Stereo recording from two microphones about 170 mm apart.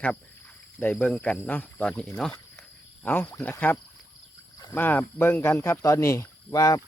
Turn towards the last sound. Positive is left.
turn(degrees=20)  # may be behind; listen again after turning